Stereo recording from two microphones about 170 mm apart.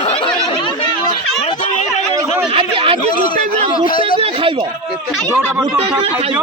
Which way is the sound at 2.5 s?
30° right (ahead or behind).